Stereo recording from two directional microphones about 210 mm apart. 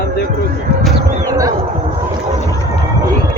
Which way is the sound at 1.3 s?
15° right (ahead or behind).